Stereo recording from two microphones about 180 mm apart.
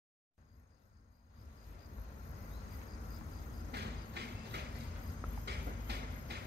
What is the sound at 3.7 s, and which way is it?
Music, 65° right (ahead or behind).